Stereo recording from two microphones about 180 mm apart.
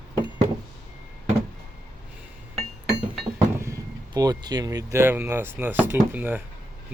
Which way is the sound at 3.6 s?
15° right (ahead or behind).